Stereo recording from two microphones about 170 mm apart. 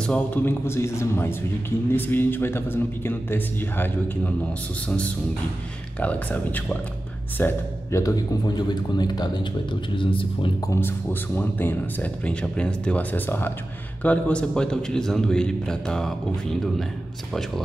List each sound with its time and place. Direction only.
0.0 s a man's voice: 10° left (ahead or behind); by 10.5 s 30° left (ahead or behind)
11.3 s a man's voice: 10° left (ahead or behind)